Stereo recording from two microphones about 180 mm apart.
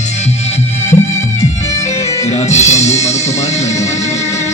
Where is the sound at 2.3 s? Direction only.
40° left (ahead or behind).